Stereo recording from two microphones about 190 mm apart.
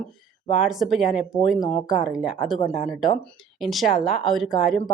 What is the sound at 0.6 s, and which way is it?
A woman's voice, centre (ahead or behind).